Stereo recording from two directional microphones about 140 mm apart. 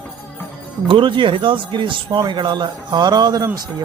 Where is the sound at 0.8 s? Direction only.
35° right (ahead or behind).